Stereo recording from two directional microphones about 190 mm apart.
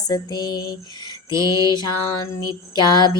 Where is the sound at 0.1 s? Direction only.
20° left (ahead or behind).